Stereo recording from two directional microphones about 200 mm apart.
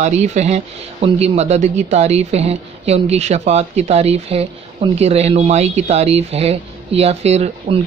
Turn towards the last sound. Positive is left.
turn(degrees=-35)  # may be behind; listen again after turning